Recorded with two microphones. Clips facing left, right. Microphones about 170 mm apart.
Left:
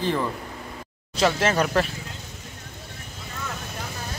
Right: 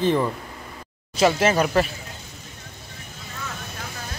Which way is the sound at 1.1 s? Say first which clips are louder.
Right 3 dB; 5° right (ahead or behind).